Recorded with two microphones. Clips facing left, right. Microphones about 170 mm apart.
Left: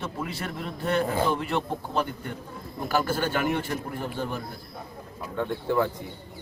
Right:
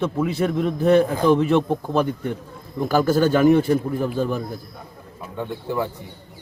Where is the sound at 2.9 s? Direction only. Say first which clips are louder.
Right 8 dB; 40° right (ahead or behind).